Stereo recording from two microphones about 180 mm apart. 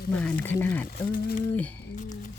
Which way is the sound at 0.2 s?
10° left (ahead or behind).